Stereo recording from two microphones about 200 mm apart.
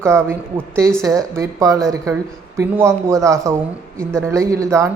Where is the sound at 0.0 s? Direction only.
15° right (ahead or behind).